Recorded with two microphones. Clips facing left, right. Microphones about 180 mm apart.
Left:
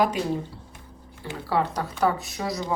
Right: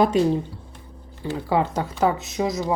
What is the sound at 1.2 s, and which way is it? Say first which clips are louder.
Speech: right 3 dB; 20° right (ahead or behind).